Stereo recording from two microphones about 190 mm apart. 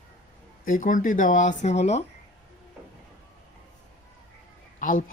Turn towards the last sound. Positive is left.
turn(degrees=45)  # may be behind; listen again after turning